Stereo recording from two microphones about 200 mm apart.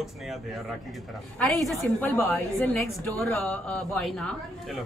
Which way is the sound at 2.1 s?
10° left (ahead or behind).